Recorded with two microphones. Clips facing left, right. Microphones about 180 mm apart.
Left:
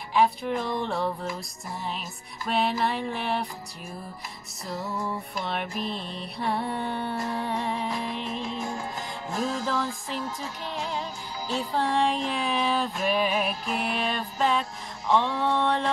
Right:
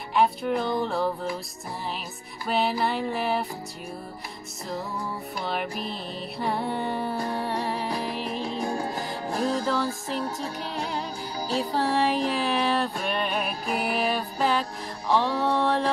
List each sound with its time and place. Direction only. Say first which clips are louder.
0.1 s music: right 1 dB; centre (ahead or behind)
2.4 s music: right 1 dB; centre (ahead or behind)
5.4 s music: right 2 dB; centre (ahead or behind)
7.9 s music: right 2 dB; 35° right (ahead or behind)
11.7 s music: even; 5° right (ahead or behind)